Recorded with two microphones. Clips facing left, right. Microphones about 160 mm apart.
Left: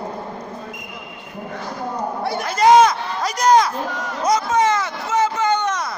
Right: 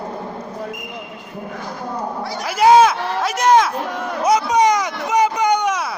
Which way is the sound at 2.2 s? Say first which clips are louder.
Left 3 dB; 60° left (ahead or behind).